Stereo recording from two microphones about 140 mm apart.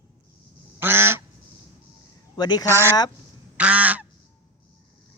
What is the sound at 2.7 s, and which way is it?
Speech, 20° right (ahead or behind).